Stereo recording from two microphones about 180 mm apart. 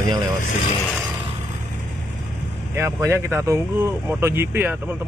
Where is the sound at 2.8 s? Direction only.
15° right (ahead or behind).